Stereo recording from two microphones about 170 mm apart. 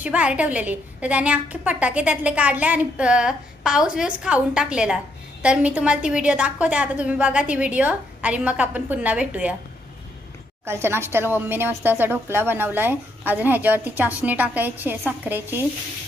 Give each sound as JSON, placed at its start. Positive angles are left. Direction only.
{"t": 0.0, "sound": "a woman's voice", "side_deg": -10}
{"t": 10.6, "sound": "a woman's voice", "side_deg": -15}